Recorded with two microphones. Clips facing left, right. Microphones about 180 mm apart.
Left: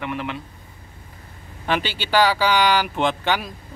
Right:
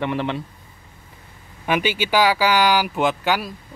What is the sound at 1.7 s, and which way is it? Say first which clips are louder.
Speech: right 2 dB; 10° right (ahead or behind).